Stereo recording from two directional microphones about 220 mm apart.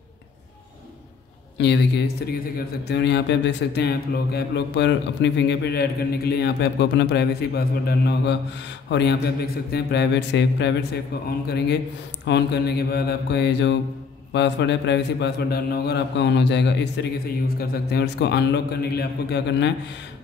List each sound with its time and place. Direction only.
1.6 s speech: 50° left (ahead or behind)